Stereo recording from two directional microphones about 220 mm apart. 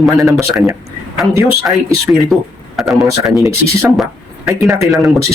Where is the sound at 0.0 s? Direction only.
Centre (ahead or behind).